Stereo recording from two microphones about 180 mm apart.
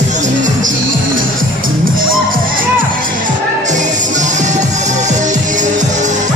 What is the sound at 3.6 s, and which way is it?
Music, 40° right (ahead or behind).